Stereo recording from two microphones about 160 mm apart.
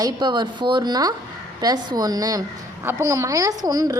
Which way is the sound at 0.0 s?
25° right (ahead or behind).